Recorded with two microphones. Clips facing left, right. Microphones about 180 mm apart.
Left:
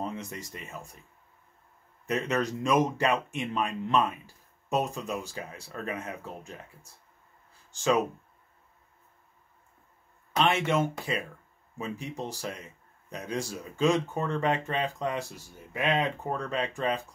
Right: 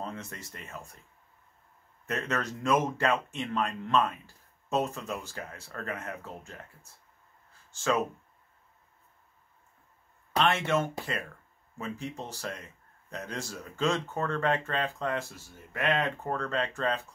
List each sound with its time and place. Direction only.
0.0 s speech: 15° left (ahead or behind)
2.0 s speech: 15° left (ahead or behind)
7.7 s speech: 15° left (ahead or behind)
10.4 s speech: 15° left (ahead or behind)